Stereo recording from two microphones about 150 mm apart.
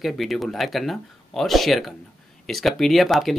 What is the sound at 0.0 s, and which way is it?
Speech, centre (ahead or behind).